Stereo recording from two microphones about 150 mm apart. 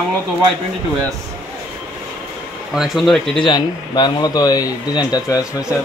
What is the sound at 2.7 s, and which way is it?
Speech, centre (ahead or behind).